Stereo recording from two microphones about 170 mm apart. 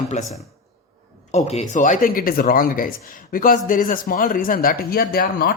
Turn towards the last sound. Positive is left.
turn(degrees=60)  # may be behind; listen again after turning